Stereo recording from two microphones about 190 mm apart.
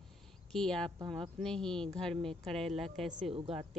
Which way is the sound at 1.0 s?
25° right (ahead or behind).